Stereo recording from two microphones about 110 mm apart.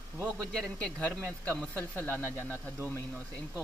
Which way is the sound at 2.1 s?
20° right (ahead or behind).